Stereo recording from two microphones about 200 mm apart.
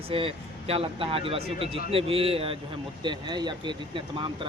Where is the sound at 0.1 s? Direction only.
30° right (ahead or behind).